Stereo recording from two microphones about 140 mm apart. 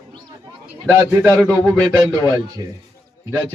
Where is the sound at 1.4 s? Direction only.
10° left (ahead or behind).